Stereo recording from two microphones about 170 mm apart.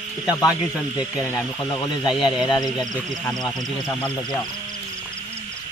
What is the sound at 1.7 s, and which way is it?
Speech, 25° left (ahead or behind).